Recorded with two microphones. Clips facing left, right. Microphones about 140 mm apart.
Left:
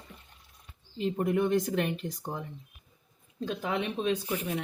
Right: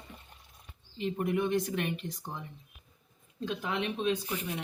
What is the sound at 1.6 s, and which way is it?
Speech, 40° left (ahead or behind).